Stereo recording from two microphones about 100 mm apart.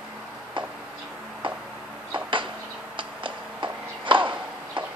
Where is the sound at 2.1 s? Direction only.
55° right (ahead or behind).